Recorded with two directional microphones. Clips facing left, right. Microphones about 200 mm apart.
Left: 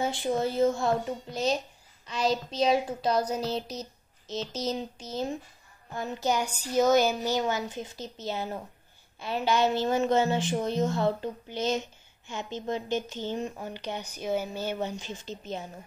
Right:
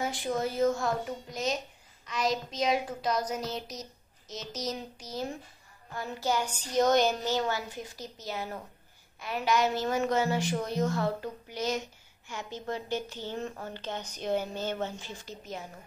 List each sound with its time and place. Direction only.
0.0 s a woman's voice: 25° left (ahead or behind)
6.7 s a woman's voice: 5° left (ahead or behind); by 15.6 s 25° left (ahead or behind)